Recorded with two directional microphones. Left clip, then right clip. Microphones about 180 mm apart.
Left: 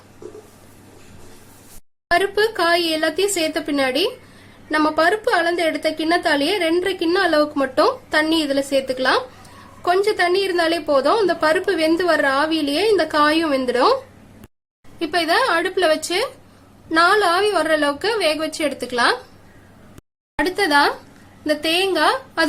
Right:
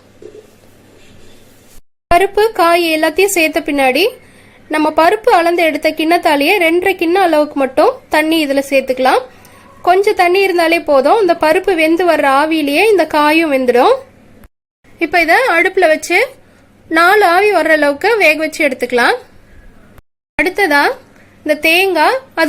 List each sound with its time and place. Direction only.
2.1 s a woman's voice: 20° right (ahead or behind)
14.9 s a woman's voice: 20° right (ahead or behind)
20.4 s a woman's voice: 20° right (ahead or behind)